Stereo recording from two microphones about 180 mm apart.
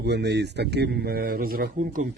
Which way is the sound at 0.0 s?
70° right (ahead or behind).